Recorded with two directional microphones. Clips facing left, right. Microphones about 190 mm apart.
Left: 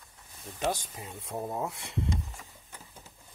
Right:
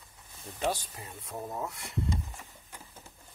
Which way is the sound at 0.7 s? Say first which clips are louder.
Left 1 dB; 20° left (ahead or behind).